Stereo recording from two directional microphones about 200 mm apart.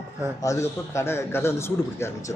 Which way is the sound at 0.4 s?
15° left (ahead or behind).